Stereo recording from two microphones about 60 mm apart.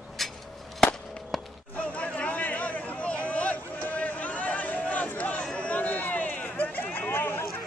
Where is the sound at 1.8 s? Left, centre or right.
Centre.